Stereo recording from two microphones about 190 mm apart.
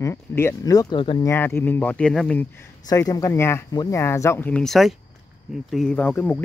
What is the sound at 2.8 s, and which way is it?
Speech, 20° left (ahead or behind).